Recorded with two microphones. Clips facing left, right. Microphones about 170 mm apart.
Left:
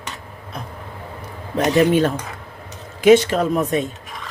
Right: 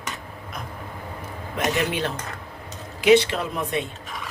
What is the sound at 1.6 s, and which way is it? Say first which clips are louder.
Speech: left 9 dB; 40° left (ahead or behind).